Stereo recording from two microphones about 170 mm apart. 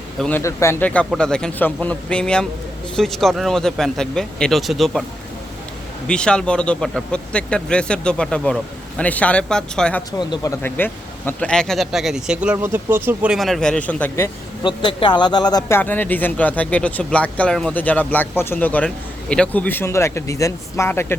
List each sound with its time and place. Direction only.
0.2 s speech: 10° left (ahead or behind)
6.1 s speech: 5° left (ahead or behind)
10.1 s speech: 20° left (ahead or behind)
14.8 s speech: 25° left (ahead or behind)
15.8 s speech: 10° left (ahead or behind)